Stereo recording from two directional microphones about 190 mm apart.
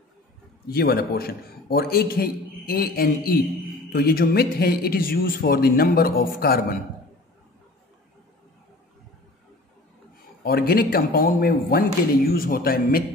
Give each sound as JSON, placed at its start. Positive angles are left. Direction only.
{"t": 0.7, "sound": "a man's voice", "side_deg": 55}
{"t": 10.4, "sound": "a man's voice", "side_deg": 50}